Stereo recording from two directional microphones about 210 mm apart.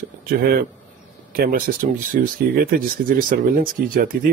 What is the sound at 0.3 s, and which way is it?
Speech, 45° right (ahead or behind).